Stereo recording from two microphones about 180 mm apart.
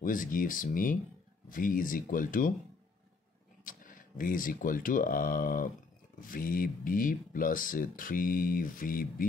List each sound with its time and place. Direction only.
0.0 s speech: 50° left (ahead or behind)
3.6 s speech: 50° left (ahead or behind)